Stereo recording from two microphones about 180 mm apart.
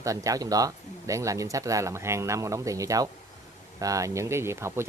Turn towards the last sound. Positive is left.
turn(degrees=-15)  # may be behind; listen again after turning